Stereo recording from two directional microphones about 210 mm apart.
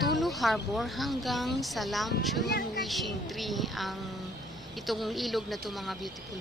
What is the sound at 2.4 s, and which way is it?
Speech, 45° left (ahead or behind).